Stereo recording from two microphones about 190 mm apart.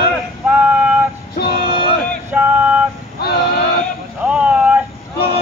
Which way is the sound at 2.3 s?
5° right (ahead or behind).